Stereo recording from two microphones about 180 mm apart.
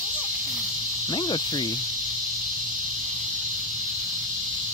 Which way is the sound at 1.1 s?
25° left (ahead or behind).